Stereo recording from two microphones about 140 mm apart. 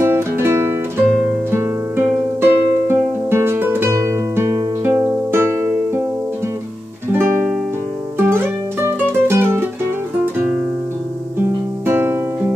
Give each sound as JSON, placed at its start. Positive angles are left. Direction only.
{"t": 0.0, "sound": "music", "side_deg": -15}
{"t": 7.1, "sound": "music", "side_deg": -15}
{"t": 11.3, "sound": "music", "side_deg": -15}